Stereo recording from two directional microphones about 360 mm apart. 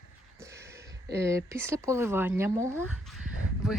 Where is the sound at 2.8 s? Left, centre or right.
Centre.